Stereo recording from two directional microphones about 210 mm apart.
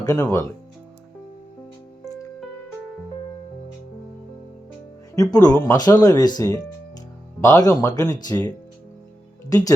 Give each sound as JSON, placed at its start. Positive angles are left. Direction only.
{"t": 0.0, "sound": "speech", "side_deg": 15}
{"t": 5.1, "sound": "speech", "side_deg": 15}